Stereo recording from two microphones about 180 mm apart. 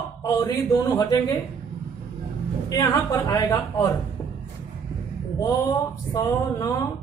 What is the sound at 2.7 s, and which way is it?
Speech, 20° left (ahead or behind).